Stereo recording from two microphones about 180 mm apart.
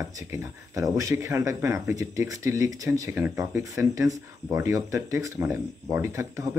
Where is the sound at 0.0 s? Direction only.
15° right (ahead or behind).